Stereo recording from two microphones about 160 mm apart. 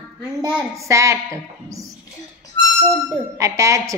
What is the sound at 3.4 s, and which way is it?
Speech, 20° right (ahead or behind).